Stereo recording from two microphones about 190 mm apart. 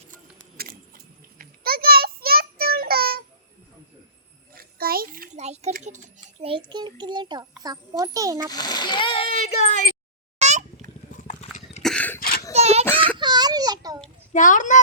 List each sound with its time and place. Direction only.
0.5 s a sound: 55° right (ahead or behind)
4.5 s a sound: 50° right (ahead or behind)
5.7 s speech: 40° right (ahead or behind)
6.1 s a child's voice: 25° right (ahead or behind)
8.4 s speech: 20° left (ahead or behind); by 9.9 s 35° left (ahead or behind)
10.3 s a sound: 35° right (ahead or behind)
11.2 s horse: 40° left (ahead or behind)
11.8 s throat clearing: 5° left (ahead or behind)
12.5 s child singing: 35° right (ahead or behind)
12.8 s child singing: 10° left (ahead or behind)
13.1 s a sound: 25° right (ahead or behind)
14.3 s speech: 40° left (ahead or behind)